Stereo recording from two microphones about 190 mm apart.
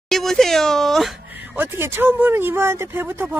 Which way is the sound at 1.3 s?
10° right (ahead or behind).